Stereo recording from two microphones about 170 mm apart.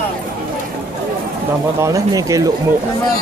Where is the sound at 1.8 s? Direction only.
20° right (ahead or behind).